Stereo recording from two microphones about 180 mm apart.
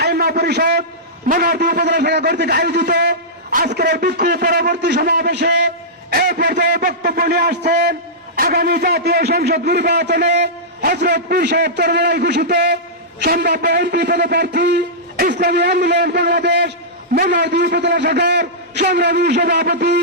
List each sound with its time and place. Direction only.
0.0 s a sound: 60° right (ahead or behind)
1.3 s a man's voice: 45° right (ahead or behind)
1.7 s a man's voice: 70° right (ahead or behind)
6.1 s a man's voice: 50° right (ahead or behind)
6.4 s a man's voice: 70° right (ahead or behind)
6.7 s a man's voice: 55° right (ahead or behind); by 16.7 s 70° right (ahead or behind)
17.2 s a man's voice: 60° right (ahead or behind)